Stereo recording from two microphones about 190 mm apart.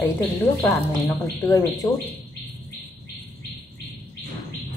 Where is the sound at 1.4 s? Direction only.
20° left (ahead or behind).